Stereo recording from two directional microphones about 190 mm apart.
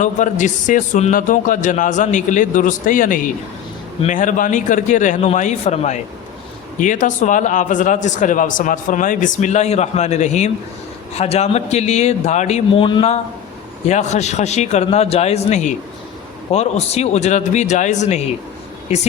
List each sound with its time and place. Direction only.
0.0 s a man's voice: 40° left (ahead or behind)